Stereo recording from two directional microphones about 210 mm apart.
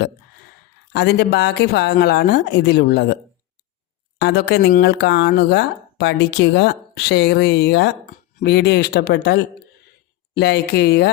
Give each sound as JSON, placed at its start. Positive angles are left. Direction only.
{"t": 0.9, "sound": "speech", "side_deg": 50}
{"t": 4.2, "sound": "speech", "side_deg": 50}